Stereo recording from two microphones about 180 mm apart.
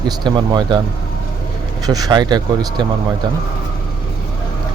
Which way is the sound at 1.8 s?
20° right (ahead or behind).